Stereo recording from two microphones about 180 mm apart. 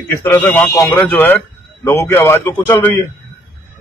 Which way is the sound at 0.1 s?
10° left (ahead or behind).